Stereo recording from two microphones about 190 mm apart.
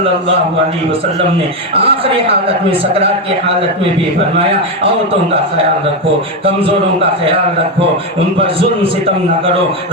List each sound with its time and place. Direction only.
1.7 s a woman's voice: 30° right (ahead or behind)